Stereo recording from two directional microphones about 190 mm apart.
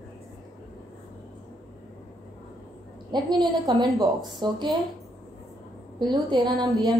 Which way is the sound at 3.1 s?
20° right (ahead or behind).